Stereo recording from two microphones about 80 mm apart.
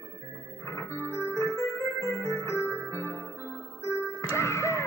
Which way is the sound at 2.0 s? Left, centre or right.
Left.